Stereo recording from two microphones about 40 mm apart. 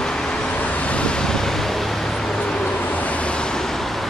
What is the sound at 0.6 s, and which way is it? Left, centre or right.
Vehicle, left.